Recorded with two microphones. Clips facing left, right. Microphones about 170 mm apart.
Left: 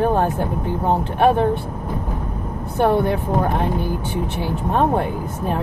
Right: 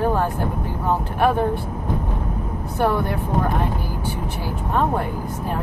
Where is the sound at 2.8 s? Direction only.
25° left (ahead or behind).